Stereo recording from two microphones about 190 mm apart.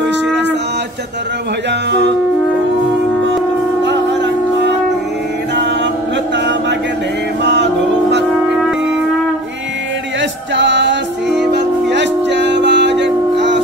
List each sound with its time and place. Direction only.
0.0 s a sound: 65° right (ahead or behind)
1.7 s music: 65° right (ahead or behind)
3.8 s shofar: 70° right (ahead or behind)
6.3 s a sound: 70° right (ahead or behind)
7.4 s music: 65° right (ahead or behind)
10.5 s music: 70° right (ahead or behind)
11.2 s music: centre (ahead or behind)
11.5 s music: 65° right (ahead or behind)